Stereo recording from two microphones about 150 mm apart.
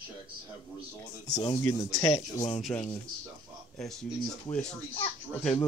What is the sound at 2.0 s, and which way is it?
Speech, 40° left (ahead or behind).